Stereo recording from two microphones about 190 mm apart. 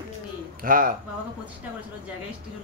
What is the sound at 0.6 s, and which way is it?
Speech, 45° right (ahead or behind).